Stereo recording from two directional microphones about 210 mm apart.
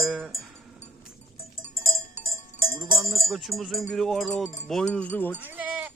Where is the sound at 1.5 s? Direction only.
45° left (ahead or behind).